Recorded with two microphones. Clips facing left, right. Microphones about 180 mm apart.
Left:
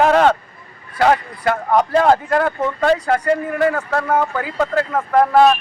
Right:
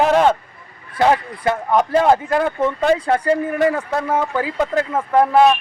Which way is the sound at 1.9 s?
15° right (ahead or behind).